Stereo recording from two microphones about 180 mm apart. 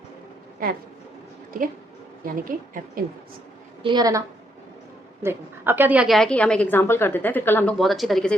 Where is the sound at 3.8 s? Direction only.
25° right (ahead or behind); by 7.7 s 10° left (ahead or behind).